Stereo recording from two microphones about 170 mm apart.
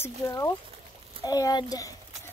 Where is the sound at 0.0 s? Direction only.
20° left (ahead or behind).